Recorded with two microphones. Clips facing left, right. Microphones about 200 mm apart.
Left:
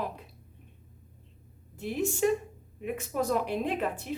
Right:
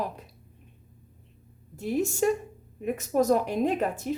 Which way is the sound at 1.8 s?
40° right (ahead or behind).